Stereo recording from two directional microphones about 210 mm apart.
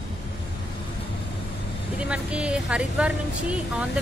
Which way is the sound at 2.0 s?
5° right (ahead or behind).